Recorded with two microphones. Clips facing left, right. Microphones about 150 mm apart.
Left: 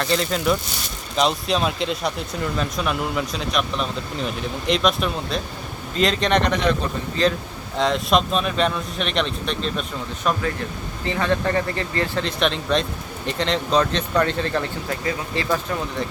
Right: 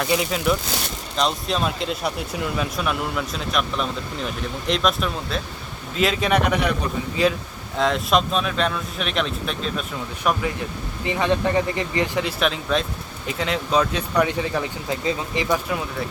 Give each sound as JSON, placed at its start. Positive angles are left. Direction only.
{"t": 0.0, "sound": "speech", "side_deg": -10}
{"t": 12.4, "sound": "speech", "side_deg": -5}